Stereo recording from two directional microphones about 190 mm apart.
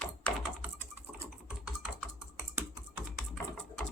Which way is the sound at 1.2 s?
5° right (ahead or behind).